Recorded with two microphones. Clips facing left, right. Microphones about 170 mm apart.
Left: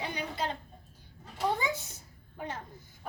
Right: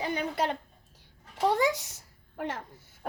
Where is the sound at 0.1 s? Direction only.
60° right (ahead or behind).